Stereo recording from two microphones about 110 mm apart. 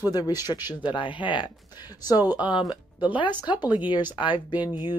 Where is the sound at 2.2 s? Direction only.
15° right (ahead or behind).